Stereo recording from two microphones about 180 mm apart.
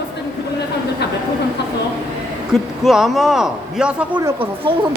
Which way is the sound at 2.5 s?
Centre (ahead or behind).